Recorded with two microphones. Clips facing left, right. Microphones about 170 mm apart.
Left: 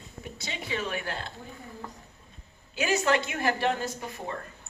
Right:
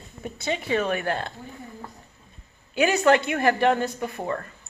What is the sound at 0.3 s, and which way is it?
Speech, 50° right (ahead or behind).